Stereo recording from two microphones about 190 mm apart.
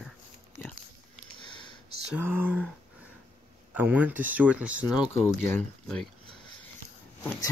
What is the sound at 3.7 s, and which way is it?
Speech, 10° right (ahead or behind).